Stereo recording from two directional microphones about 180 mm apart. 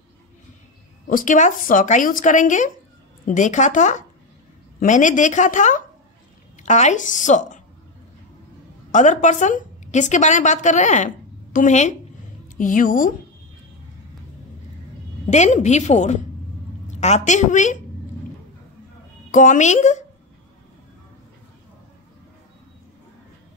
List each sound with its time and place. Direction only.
1.0 s a woman's voice: 50° left (ahead or behind)
8.9 s a woman's voice: 45° left (ahead or behind)
15.2 s a woman's voice: 40° left (ahead or behind)
19.3 s a woman's voice: 45° left (ahead or behind)